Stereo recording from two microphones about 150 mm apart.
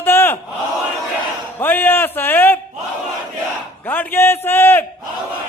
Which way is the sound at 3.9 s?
15° left (ahead or behind).